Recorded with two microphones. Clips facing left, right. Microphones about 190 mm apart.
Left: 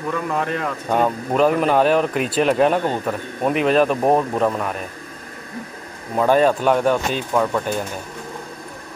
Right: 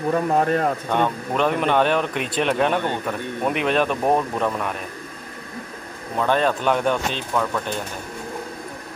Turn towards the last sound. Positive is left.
turn(degrees=15)  # may be behind; listen again after turning